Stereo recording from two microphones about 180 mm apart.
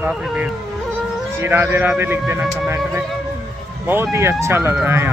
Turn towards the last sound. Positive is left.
turn(degrees=-10)  # may be behind; listen again after turning